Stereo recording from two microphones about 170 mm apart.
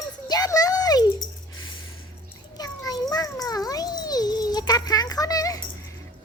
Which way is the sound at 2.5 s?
20° left (ahead or behind).